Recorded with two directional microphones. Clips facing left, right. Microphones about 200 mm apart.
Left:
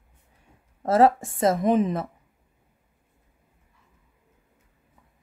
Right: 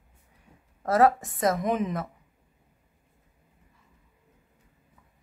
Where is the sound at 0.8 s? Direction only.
25° left (ahead or behind).